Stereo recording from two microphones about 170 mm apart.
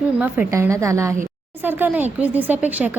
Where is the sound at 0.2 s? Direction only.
10° right (ahead or behind).